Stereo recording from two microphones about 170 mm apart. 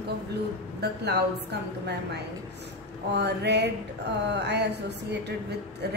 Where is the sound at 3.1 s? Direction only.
90° right.